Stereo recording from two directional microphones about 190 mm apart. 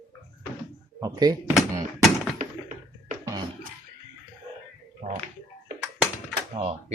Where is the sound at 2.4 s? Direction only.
45° right (ahead or behind).